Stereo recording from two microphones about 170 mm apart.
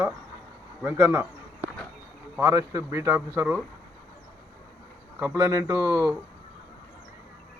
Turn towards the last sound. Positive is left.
turn(degrees=-20)  # may be behind; listen again after turning